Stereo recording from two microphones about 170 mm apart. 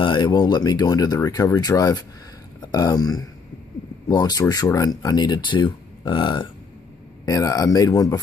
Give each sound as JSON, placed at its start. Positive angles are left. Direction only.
{"t": 0.0, "sound": "speech", "side_deg": 25}